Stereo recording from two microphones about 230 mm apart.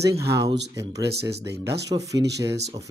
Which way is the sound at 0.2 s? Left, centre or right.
Centre.